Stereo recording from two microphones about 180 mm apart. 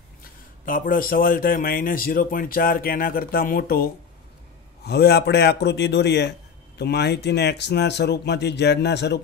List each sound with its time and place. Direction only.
0.7 s a man's voice: 50° left (ahead or behind); by 9.2 s 70° left (ahead or behind)